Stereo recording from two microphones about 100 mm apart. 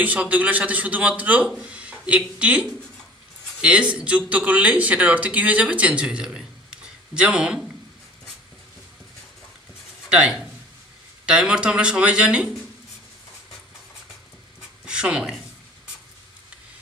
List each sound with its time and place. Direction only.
0.0 s a man's voice: 15° right (ahead or behind)
10.0 s a man's voice: 10° right (ahead or behind)
14.9 s speech: 10° right (ahead or behind)